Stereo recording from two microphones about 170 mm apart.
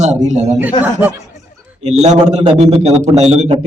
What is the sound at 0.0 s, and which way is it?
Speech, 45° right (ahead or behind).